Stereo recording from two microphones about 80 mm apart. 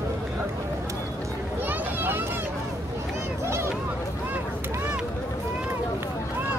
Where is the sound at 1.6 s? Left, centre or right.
Right.